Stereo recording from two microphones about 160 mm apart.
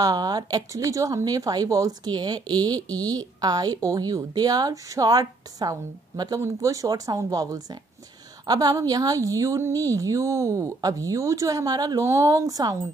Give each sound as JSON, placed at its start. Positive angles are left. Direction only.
{"t": 0.0, "sound": "speech", "side_deg": -25}